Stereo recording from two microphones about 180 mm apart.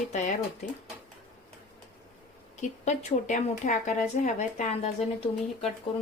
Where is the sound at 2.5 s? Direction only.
40° left (ahead or behind).